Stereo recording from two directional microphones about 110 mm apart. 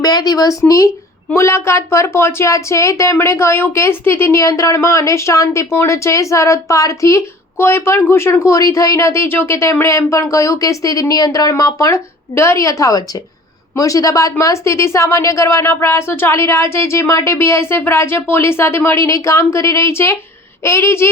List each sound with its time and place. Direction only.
0.0 s speech: 35° left (ahead or behind)